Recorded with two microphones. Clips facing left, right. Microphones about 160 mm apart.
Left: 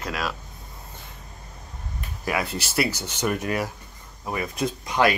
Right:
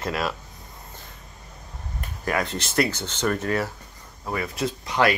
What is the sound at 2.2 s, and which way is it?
Speech, 10° left (ahead or behind).